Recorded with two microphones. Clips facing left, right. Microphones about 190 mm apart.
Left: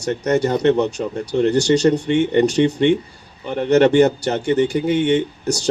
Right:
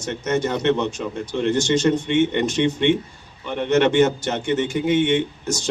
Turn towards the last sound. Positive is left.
turn(degrees=35)  # may be behind; listen again after turning